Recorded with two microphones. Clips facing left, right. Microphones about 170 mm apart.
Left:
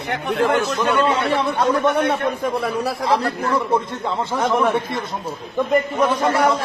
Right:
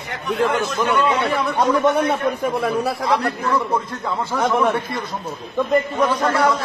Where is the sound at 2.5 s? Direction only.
Centre (ahead or behind).